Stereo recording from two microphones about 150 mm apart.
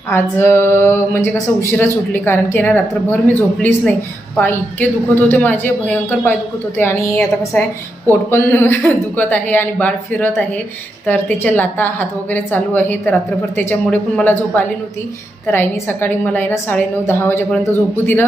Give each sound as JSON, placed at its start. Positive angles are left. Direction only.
{"t": 0.1, "sound": "a woman's voice", "side_deg": 15}